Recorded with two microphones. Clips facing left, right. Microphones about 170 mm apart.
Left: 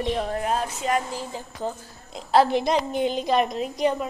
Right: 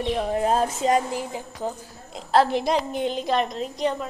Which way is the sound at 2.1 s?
Centre (ahead or behind).